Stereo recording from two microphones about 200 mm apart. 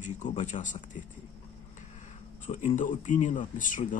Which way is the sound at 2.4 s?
40° left (ahead or behind).